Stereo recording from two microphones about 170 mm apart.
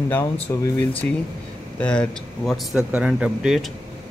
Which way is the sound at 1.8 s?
5° left (ahead or behind).